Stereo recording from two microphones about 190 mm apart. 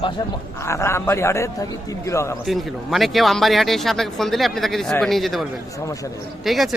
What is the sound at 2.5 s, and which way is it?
Speech, centre (ahead or behind).